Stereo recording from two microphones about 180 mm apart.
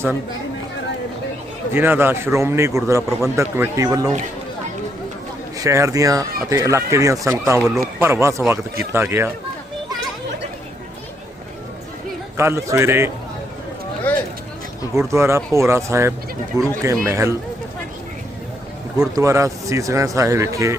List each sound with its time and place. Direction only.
1.7 s speech: 10° right (ahead or behind)
5.5 s speech: 15° right (ahead or behind)
12.4 s speech: 15° right (ahead or behind)
14.1 s a sound: 10° left (ahead or behind)
14.9 s speech: 15° right (ahead or behind)
18.9 s speech: 20° right (ahead or behind)